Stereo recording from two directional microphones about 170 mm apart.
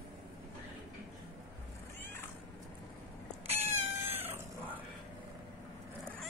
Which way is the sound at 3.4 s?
35° right (ahead or behind).